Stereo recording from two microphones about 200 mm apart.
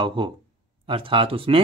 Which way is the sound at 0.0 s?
25° right (ahead or behind).